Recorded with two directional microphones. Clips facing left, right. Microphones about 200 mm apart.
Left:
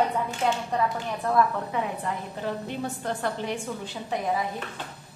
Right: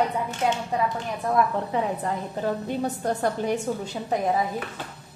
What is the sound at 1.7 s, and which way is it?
A woman's voice, 35° right (ahead or behind).